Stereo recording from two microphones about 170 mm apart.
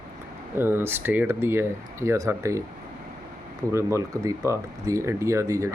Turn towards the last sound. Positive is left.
turn(degrees=-20)  # may be behind; listen again after turning